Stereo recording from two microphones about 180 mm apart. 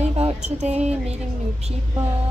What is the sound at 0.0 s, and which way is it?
Speech, 35° right (ahead or behind).